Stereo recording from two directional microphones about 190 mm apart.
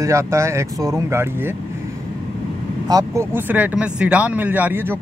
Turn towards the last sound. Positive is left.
turn(degrees=-10)  # may be behind; listen again after turning